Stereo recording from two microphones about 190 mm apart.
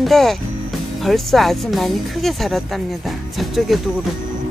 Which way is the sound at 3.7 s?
Centre (ahead or behind).